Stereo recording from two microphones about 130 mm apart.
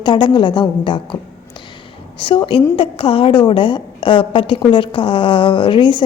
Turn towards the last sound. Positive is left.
turn(degrees=40)  # may be behind; listen again after turning